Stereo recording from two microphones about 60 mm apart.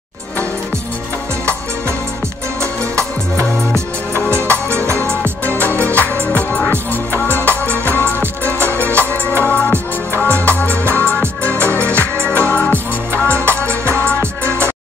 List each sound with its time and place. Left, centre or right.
4.3 s music: right
5.2 s music: left
8.2 s music: right
8.8 s music: left
12.7 s music: right
13.9 s music: left